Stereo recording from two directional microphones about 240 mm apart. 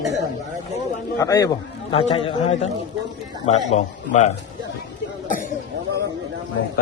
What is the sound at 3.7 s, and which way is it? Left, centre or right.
Speech, left.